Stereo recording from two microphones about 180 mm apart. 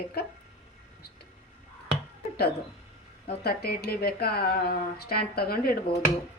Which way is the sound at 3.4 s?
60° left (ahead or behind).